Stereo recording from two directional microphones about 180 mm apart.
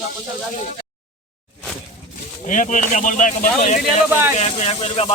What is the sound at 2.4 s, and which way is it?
Speech, 45° left (ahead or behind).